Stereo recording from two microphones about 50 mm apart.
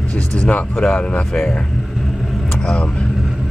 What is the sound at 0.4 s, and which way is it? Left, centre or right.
Speech, left.